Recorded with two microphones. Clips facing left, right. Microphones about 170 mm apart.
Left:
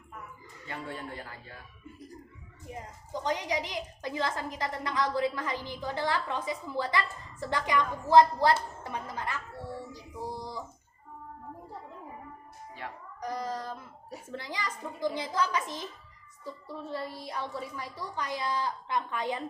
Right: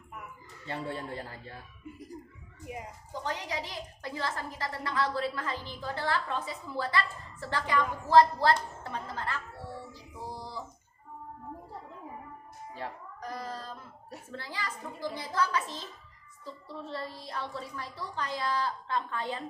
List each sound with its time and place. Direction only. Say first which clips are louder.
0.7 s speech: right 3 dB; 30° right (ahead or behind)
2.7 s speech: right 1 dB; 10° right (ahead or behind)
3.1 s a woman's voice: left 5 dB; 15° left (ahead or behind)
9.9 s music: left 4 dB; 15° left (ahead or behind)
13.1 s a sound: left 6 dB; 15° left (ahead or behind)
14.3 s a woman's voice: left 2 dB; 15° left (ahead or behind)